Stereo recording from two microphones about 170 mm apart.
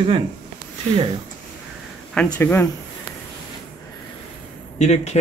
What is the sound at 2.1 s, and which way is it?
Speech, 10° left (ahead or behind).